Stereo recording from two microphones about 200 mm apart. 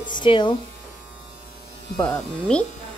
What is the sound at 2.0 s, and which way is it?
Speech, 5° left (ahead or behind).